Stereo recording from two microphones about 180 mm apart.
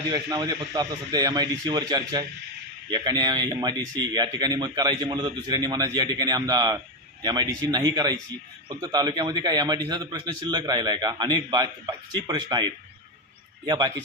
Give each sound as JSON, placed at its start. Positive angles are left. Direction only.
{"t": 0.1, "sound": "speech", "side_deg": -20}